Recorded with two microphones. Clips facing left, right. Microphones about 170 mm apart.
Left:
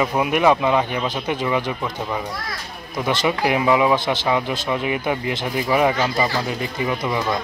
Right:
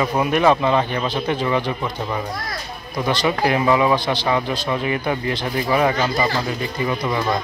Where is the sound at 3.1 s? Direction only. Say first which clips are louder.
Right 1 dB; 15° left (ahead or behind).